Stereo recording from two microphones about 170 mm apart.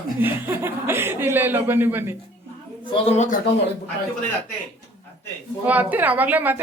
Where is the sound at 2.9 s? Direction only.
35° left (ahead or behind).